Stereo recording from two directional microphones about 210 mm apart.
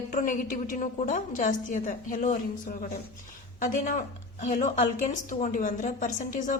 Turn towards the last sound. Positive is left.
turn(degrees=40)  # may be behind; listen again after turning